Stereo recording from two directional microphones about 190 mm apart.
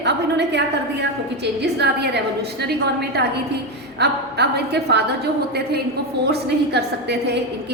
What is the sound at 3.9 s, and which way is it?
A woman's voice, 60° right (ahead or behind).